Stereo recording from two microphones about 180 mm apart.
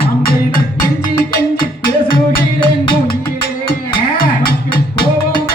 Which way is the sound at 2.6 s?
30° left (ahead or behind).